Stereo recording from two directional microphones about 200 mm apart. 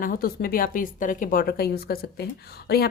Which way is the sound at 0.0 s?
45° left (ahead or behind).